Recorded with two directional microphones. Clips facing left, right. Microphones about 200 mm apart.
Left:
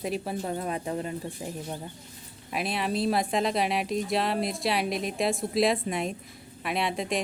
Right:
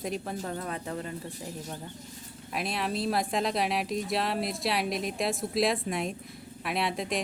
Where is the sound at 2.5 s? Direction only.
Centre (ahead or behind).